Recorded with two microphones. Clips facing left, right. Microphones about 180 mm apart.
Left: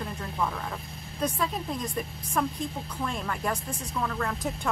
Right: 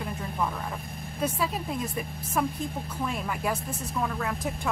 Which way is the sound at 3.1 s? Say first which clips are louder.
Right 1 dB; 10° right (ahead or behind).